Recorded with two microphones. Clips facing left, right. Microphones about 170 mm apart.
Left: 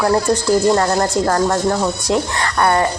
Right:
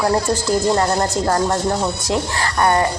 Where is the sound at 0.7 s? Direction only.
20° right (ahead or behind).